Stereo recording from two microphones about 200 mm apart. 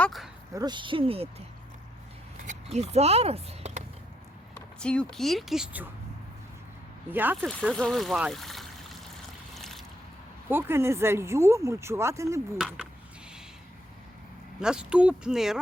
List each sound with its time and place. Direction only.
0.0 s a sound: centre (ahead or behind)
0.5 s speech: 20° right (ahead or behind)
2.5 s speech: 35° right (ahead or behind)
4.5 s speech: 5° left (ahead or behind)
7.1 s speech: 10° right (ahead or behind)
7.4 s speech: centre (ahead or behind)
9.6 s boat: centre (ahead or behind)
10.5 s speech: 10° right (ahead or behind)
12.5 s speech: centre (ahead or behind)
14.6 s speech: 5° right (ahead or behind)